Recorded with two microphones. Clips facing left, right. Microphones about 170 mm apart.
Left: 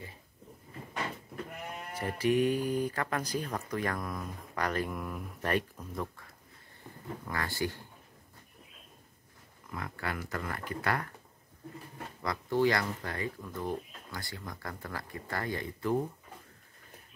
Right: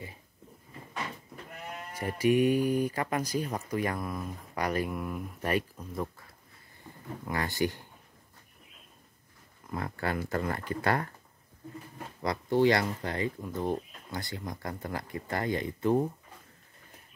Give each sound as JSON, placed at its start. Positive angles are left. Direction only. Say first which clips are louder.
{"t": 2.0, "sound": "speech", "louder": "right 3 dB", "side_deg": -15}
{"t": 7.2, "sound": "speech", "louder": "right 4 dB", "side_deg": -20}
{"t": 9.7, "sound": "speech", "louder": "right 5 dB", "side_deg": -30}
{"t": 12.2, "sound": "speech", "louder": "right 3 dB", "side_deg": -20}